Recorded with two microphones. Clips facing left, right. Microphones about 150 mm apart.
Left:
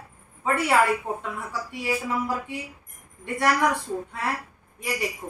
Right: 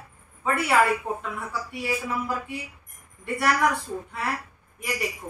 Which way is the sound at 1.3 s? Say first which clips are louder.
Even; 20° left (ahead or behind).